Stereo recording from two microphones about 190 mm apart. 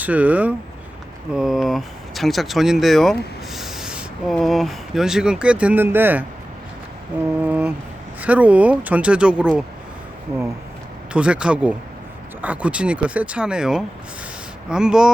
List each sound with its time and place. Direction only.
0.0 s speech: 10° right (ahead or behind)
7.4 s a sound: 10° right (ahead or behind)
8.2 s speech: 10° right (ahead or behind)
11.1 s speech: 5° right (ahead or behind)